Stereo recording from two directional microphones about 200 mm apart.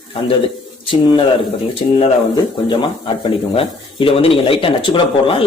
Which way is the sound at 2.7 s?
25° left (ahead or behind).